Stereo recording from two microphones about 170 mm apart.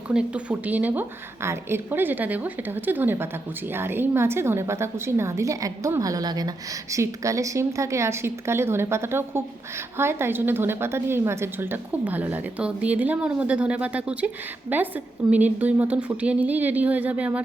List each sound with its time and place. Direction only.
0.1 s a woman's voice: 5° right (ahead or behind)